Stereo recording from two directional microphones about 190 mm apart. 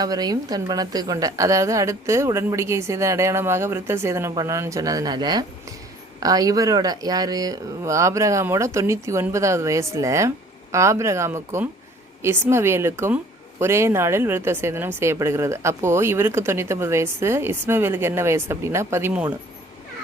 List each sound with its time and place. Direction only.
0.0 s a woman's voice: 20° right (ahead or behind)